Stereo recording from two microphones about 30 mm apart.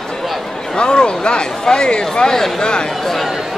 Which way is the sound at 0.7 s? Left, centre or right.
Left.